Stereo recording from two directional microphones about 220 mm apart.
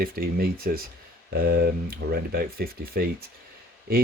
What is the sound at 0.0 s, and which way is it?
Speech, 40° right (ahead or behind).